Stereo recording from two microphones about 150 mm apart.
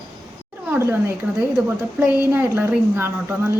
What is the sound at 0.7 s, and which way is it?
A man's voice, 15° right (ahead or behind).